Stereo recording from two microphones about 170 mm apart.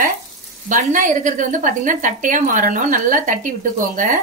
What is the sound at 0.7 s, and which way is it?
A woman's voice, 50° right (ahead or behind).